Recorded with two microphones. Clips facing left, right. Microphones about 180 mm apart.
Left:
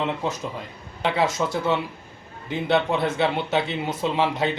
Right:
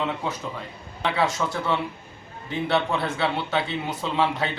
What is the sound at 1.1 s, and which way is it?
A man's voice, 20° left (ahead or behind).